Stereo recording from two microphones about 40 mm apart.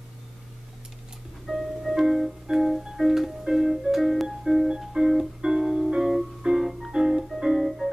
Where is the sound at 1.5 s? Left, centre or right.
Centre.